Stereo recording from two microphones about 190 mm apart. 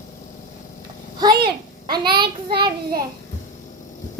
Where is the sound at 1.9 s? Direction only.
25° right (ahead or behind).